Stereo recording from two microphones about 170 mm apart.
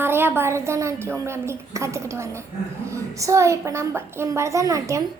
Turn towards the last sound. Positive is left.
turn(degrees=-20)  # may be behind; listen again after turning